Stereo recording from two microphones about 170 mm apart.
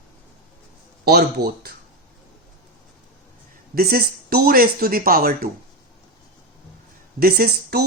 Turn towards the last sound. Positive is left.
turn(degrees=-65)  # may be behind; listen again after turning